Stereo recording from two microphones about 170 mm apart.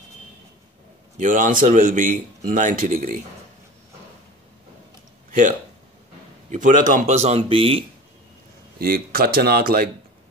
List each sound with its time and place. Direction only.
1.1 s a man's voice: 45° right (ahead or behind)
6.5 s speech: 50° right (ahead or behind); by 7.8 s 35° right (ahead or behind)
8.7 s speech: 65° right (ahead or behind)